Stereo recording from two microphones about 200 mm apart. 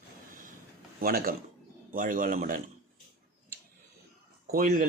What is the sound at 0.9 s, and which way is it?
Speech, 45° right (ahead or behind).